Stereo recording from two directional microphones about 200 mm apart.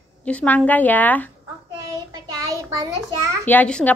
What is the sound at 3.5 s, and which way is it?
Speech, 5° left (ahead or behind).